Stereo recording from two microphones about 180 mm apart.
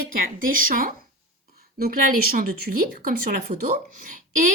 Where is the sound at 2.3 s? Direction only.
50° right (ahead or behind).